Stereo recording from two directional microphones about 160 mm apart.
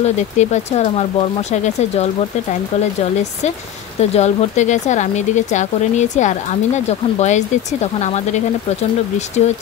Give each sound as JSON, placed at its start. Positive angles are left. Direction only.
{"t": 0.0, "sound": "speech", "side_deg": 45}
{"t": 4.0, "sound": "speech", "side_deg": 40}